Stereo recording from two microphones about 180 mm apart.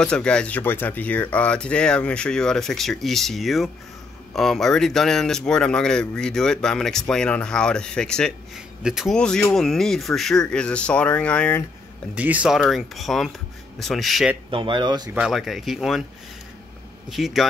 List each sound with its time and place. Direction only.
0.0 s speech: 5° left (ahead or behind)
12.2 s speech: 10° right (ahead or behind)
14.5 s speech: 25° right (ahead or behind)
15.1 s speech: centre (ahead or behind)
17.1 s speech: centre (ahead or behind)